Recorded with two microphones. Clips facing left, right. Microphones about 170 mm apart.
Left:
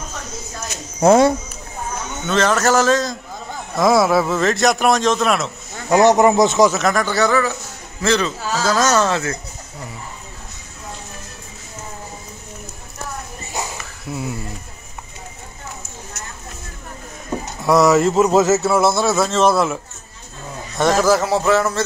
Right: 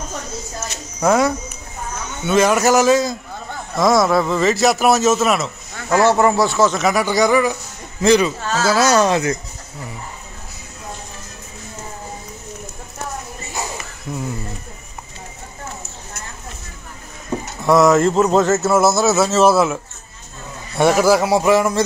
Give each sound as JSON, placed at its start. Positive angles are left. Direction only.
{"t": 1.0, "sound": "speech", "side_deg": 25}
{"t": 2.2, "sound": "a man's voice", "side_deg": -10}
{"t": 3.7, "sound": "speech", "side_deg": 5}
{"t": 5.9, "sound": "speech", "side_deg": 20}
{"t": 6.7, "sound": "a man's voice", "side_deg": -5}
{"t": 8.4, "sound": "speech", "side_deg": 10}
{"t": 8.6, "sound": "a man's voice", "side_deg": -10}
{"t": 14.1, "sound": "speech", "side_deg": 5}
{"t": 17.6, "sound": "a man's voice", "side_deg": 0}